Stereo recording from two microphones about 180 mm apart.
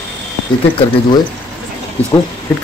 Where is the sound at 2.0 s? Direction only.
10° left (ahead or behind).